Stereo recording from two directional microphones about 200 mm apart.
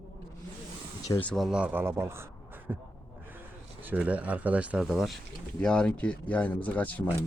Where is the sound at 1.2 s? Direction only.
Centre (ahead or behind).